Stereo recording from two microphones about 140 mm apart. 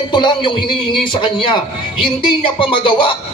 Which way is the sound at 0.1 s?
35° left (ahead or behind).